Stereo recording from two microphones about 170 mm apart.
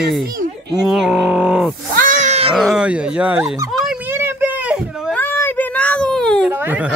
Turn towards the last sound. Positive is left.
turn(degrees=-10)  # may be behind; listen again after turning